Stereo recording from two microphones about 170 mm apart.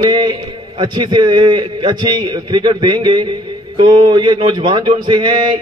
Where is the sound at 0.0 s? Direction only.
25° right (ahead or behind).